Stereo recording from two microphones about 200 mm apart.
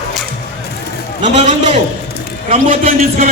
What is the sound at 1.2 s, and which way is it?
A man's voice, 35° right (ahead or behind).